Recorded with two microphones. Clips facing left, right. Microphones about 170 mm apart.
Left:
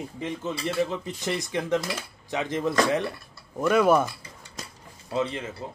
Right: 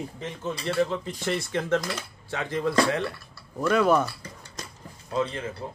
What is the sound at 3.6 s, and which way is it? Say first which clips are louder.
Speech: left 1 dB; 10° left (ahead or behind).